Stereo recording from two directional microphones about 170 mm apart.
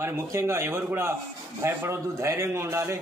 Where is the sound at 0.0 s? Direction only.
15° right (ahead or behind).